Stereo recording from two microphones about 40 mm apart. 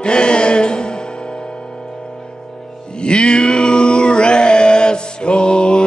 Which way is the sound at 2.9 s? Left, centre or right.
Left.